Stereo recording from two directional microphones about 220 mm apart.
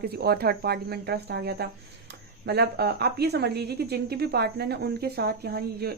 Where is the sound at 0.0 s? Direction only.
45° right (ahead or behind).